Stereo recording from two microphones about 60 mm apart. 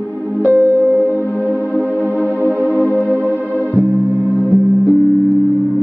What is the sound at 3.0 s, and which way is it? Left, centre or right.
Music, right.